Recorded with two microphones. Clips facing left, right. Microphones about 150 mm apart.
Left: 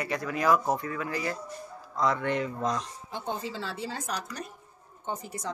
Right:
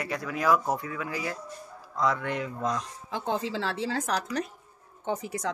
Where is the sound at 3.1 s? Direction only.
90° right.